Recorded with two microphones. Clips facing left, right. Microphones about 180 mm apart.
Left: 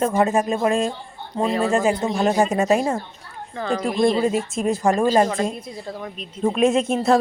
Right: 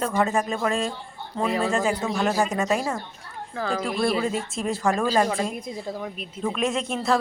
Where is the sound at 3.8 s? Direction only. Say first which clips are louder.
Left 7 dB; 25° left (ahead or behind).